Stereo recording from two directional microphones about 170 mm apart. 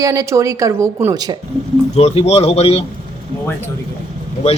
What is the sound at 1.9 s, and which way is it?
Speech, 35° left (ahead or behind).